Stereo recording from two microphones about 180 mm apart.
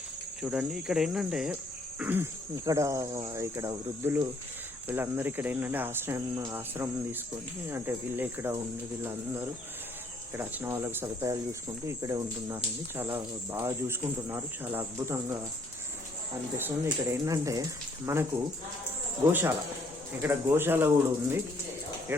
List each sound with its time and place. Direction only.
0.4 s cricket: 5° right (ahead or behind)
2.0 s speech: 10° right (ahead or behind)
16.6 s speech: 15° right (ahead or behind)
20.2 s speech: 10° right (ahead or behind)